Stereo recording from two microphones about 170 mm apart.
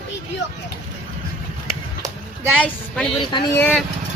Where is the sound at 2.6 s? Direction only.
5° left (ahead or behind).